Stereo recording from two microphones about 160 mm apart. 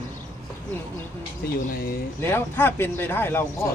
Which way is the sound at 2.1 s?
15° left (ahead or behind).